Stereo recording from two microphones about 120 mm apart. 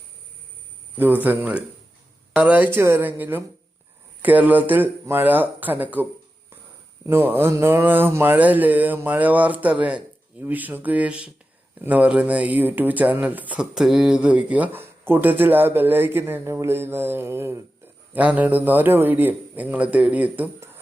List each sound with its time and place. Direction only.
0.9 s speech: 15° right (ahead or behind)